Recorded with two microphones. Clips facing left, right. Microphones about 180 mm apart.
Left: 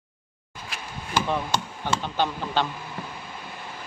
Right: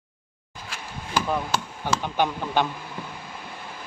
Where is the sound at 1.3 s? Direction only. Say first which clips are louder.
Even; 5° right (ahead or behind).